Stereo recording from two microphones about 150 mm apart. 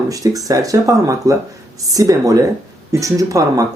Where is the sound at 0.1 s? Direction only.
25° right (ahead or behind).